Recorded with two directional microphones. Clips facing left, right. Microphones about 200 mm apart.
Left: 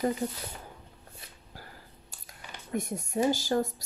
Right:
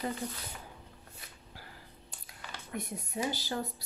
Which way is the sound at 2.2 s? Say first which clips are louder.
Left 1 dB; 45° left (ahead or behind).